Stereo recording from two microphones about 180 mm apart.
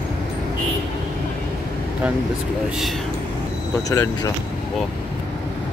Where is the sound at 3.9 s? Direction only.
15° left (ahead or behind).